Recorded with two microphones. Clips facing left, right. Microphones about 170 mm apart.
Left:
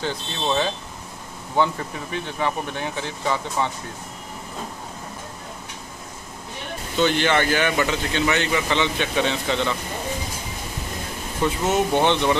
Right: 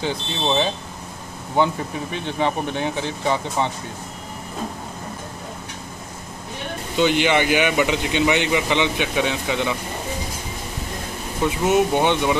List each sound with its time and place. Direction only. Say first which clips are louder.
0.0 s speech: right 2 dB; 20° right (ahead or behind)
7.0 s speech: right 2 dB; 15° right (ahead or behind)
11.4 s speech: right 3 dB; 10° right (ahead or behind)